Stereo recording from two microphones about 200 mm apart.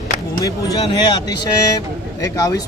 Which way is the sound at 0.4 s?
20° left (ahead or behind).